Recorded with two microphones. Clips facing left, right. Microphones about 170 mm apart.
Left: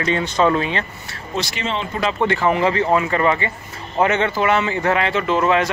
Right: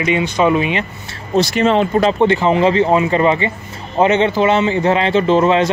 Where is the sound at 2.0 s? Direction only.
25° right (ahead or behind).